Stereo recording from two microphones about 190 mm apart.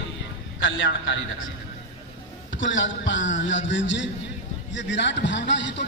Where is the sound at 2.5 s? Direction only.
75° left (ahead or behind).